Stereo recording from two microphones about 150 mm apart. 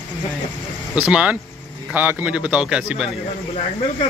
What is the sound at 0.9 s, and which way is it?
A man's voice, 10° right (ahead or behind).